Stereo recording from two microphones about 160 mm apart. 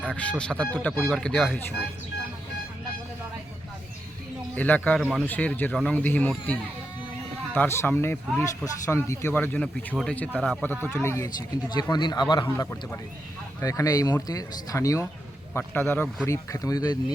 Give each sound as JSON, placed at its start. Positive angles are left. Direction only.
{"t": 0.0, "sound": "speech", "side_deg": 5}
{"t": 4.5, "sound": "speech", "side_deg": 10}